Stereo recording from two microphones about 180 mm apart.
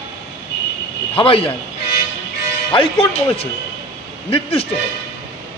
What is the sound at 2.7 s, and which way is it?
A man's voice, 30° left (ahead or behind).